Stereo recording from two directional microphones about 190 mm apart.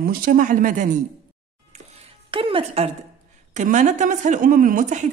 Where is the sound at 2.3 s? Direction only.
30° right (ahead or behind).